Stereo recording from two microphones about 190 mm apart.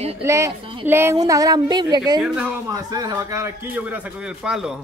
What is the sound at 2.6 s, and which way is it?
Speech, 20° right (ahead or behind).